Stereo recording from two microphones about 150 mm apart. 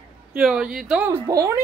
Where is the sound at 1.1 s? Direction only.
20° right (ahead or behind).